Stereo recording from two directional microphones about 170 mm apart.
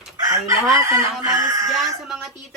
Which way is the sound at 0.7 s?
20° right (ahead or behind).